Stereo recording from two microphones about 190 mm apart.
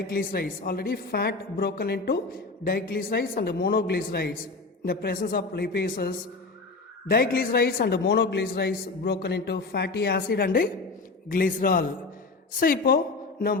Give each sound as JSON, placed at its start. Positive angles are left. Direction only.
{"t": 0.1, "sound": "a woman's voice", "side_deg": 50}